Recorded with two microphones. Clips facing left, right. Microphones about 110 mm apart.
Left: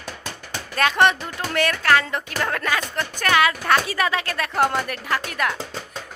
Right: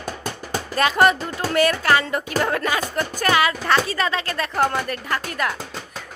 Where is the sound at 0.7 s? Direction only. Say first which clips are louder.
Right 1 dB; 5° right (ahead or behind).